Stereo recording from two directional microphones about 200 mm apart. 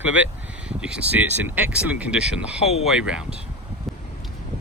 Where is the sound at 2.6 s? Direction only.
30° left (ahead or behind).